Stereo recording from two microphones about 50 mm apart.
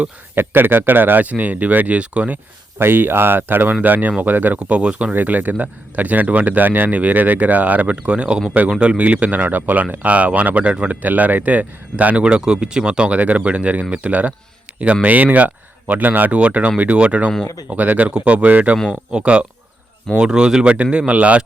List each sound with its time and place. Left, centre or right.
0.3 s speech: right
2.7 s speech: right
4.6 s speech: right
5.1 s speech: right
11.0 s speech: right
14.7 s a sound: right
15.0 s speech: right
16.4 s speech: right
21.1 s speech: right